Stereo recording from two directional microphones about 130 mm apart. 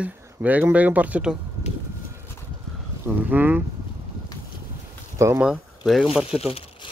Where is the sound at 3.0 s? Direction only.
15° right (ahead or behind).